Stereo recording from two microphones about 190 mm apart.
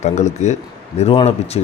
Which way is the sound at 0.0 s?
40° left (ahead or behind).